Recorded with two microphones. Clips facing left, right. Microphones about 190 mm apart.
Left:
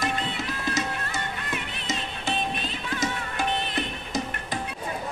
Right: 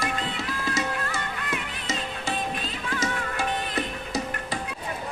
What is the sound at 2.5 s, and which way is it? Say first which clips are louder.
Music: even; 20° left (ahead or behind).